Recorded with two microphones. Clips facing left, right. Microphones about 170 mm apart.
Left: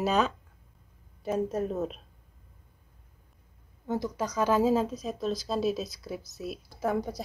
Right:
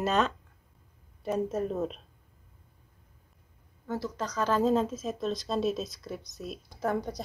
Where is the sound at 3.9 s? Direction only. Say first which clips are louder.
Left 3 dB; 15° left (ahead or behind).